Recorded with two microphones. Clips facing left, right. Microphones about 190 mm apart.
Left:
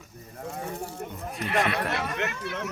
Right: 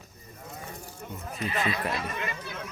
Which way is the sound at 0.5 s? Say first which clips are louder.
Left 8 dB; 70° left (ahead or behind).